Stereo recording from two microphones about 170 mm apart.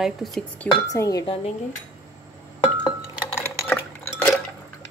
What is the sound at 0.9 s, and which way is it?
Speech, 20° left (ahead or behind).